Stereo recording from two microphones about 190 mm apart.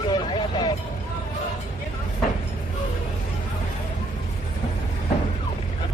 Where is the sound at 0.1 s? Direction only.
25° left (ahead or behind).